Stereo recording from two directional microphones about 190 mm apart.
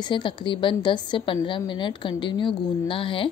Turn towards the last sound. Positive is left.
turn(degrees=30)  # may be behind; listen again after turning